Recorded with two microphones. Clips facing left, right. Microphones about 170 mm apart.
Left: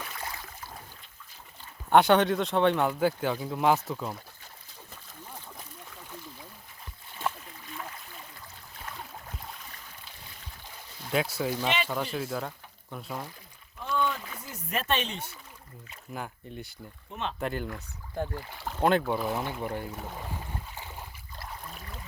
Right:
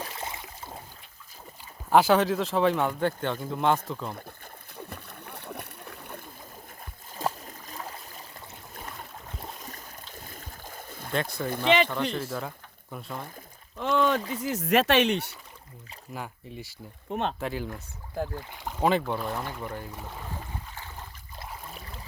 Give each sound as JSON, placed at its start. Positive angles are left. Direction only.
{"t": 0.0, "sound": "boat", "side_deg": -25}
{"t": 1.9, "sound": "speech", "side_deg": 0}
{"t": 4.8, "sound": "splash", "side_deg": -60}
{"t": 7.2, "sound": "a sound", "side_deg": -40}
{"t": 9.6, "sound": "boat", "side_deg": -45}
{"t": 11.1, "sound": "speech", "side_deg": 5}
{"t": 13.7, "sound": "a sound", "side_deg": -90}
{"t": 14.4, "sound": "speech", "side_deg": -85}
{"t": 16.1, "sound": "speech", "side_deg": 0}
{"t": 17.1, "sound": "speech", "side_deg": -45}
{"t": 17.4, "sound": "speech", "side_deg": 0}
{"t": 18.3, "sound": "speech", "side_deg": -15}
{"t": 18.8, "sound": "speech", "side_deg": 0}